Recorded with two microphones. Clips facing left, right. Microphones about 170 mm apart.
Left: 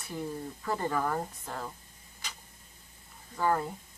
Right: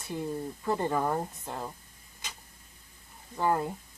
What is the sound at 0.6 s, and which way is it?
Speech, 20° right (ahead or behind).